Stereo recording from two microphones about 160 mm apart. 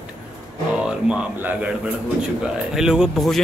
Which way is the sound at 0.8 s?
5° right (ahead or behind).